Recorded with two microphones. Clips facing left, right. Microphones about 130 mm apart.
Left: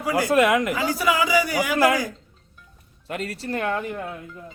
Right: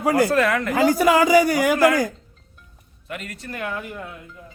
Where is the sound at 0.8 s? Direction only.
50° right (ahead or behind).